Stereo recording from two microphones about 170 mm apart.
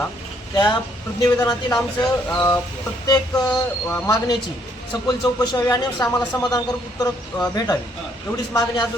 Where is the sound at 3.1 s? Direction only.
25° left (ahead or behind).